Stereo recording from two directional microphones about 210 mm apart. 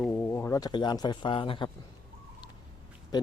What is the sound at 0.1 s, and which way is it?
A man's voice, 10° left (ahead or behind).